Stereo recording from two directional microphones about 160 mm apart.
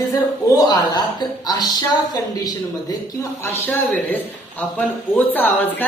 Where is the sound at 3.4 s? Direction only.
10° left (ahead or behind).